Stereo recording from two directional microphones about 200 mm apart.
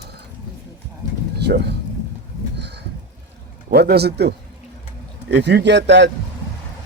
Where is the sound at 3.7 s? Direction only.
50° right (ahead or behind).